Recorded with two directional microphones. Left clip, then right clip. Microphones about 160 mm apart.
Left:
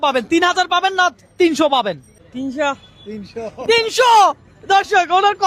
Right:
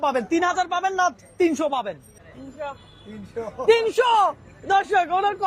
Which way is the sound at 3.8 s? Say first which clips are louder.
Left 7 dB; 40° left (ahead or behind).